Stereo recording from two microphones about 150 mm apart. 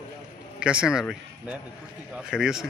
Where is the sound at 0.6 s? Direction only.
5° right (ahead or behind).